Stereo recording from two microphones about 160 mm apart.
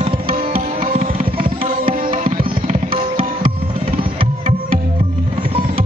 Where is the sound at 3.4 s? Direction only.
65° right (ahead or behind).